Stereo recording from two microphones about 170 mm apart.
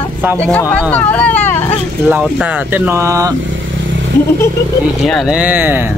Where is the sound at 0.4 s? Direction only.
10° left (ahead or behind).